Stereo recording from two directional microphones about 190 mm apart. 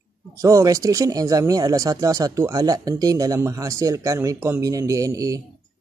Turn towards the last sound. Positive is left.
turn(degrees=-20)  # may be behind; listen again after turning